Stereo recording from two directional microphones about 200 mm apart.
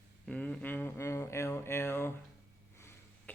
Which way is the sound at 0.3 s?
5° left (ahead or behind).